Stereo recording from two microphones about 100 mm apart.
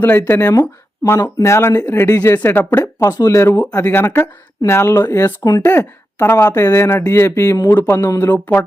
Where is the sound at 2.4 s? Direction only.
20° left (ahead or behind).